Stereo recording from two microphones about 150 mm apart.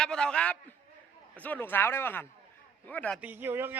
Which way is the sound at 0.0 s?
5° left (ahead or behind).